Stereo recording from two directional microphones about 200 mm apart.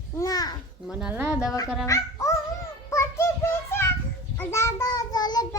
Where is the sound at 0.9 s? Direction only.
5° right (ahead or behind).